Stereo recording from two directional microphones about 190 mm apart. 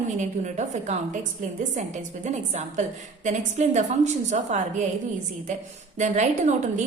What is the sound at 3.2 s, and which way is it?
A woman's voice, 40° right (ahead or behind).